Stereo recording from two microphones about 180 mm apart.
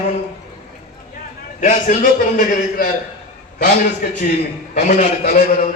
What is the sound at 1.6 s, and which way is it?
A man's voice, 50° left (ahead or behind).